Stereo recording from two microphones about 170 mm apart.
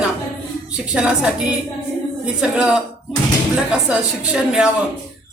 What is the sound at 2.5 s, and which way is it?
Speech, 5° right (ahead or behind).